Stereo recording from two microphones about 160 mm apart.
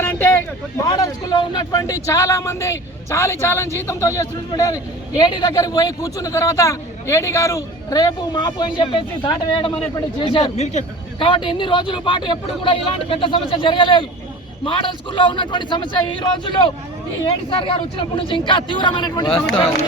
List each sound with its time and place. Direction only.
0.0 s speech: 15° left (ahead or behind)